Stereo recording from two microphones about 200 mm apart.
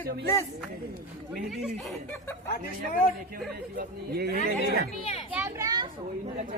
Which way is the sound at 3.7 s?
50° right (ahead or behind).